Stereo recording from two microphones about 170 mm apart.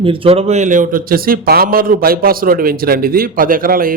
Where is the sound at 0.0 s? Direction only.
30° right (ahead or behind).